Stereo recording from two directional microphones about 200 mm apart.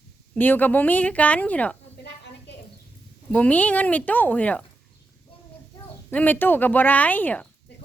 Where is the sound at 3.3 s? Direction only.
5° left (ahead or behind).